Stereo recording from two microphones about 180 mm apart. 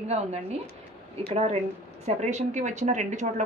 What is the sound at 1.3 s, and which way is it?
A woman's voice, 35° right (ahead or behind).